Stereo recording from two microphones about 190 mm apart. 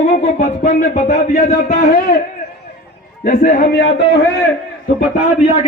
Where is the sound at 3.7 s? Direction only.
70° left (ahead or behind).